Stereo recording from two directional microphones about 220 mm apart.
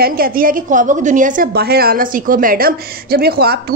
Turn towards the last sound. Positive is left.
turn(degrees=-45)  # may be behind; listen again after turning